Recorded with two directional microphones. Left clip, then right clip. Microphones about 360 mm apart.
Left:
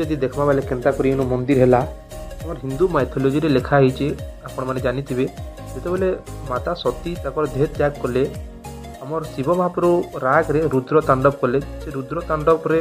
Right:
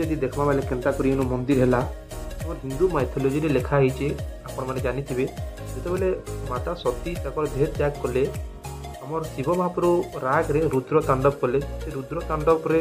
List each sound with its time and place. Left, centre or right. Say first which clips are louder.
0.0 s speech: left 4 dB; centre
2.9 s speech: left 5 dB; centre